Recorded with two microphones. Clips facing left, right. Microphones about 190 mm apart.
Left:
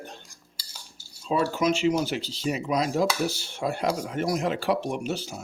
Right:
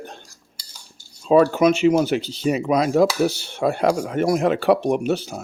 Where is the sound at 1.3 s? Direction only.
60° right (ahead or behind).